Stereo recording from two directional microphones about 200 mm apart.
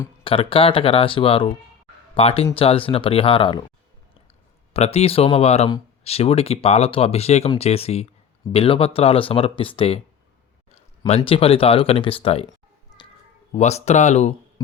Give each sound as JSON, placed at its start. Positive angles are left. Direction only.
{"t": 0.3, "sound": "speech", "side_deg": 25}
{"t": 4.7, "sound": "speech", "side_deg": 30}
{"t": 11.0, "sound": "speech", "side_deg": 30}
{"t": 13.5, "sound": "speech", "side_deg": 35}